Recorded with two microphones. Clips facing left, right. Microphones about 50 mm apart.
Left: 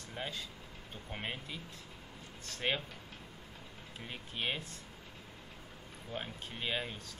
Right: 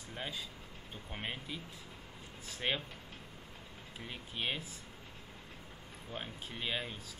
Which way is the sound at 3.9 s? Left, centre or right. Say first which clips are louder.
Even; centre.